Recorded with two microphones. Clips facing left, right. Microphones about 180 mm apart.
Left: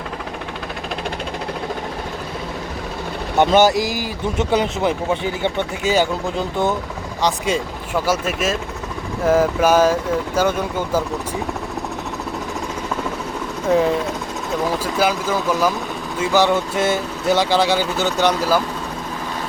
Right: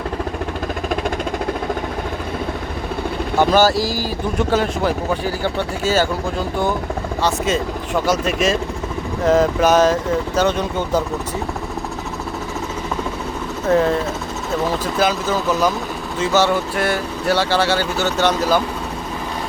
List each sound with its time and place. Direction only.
3.3 s speech: 20° left (ahead or behind)
7.2 s speech: 15° left (ahead or behind)
13.7 s speech: 10° left (ahead or behind)